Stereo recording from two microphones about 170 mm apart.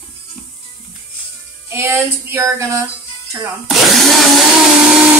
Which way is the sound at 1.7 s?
15° right (ahead or behind).